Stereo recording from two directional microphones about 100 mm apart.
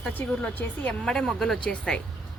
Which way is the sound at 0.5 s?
15° left (ahead or behind).